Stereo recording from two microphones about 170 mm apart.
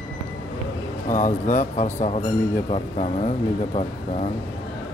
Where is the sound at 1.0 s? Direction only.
50° left (ahead or behind).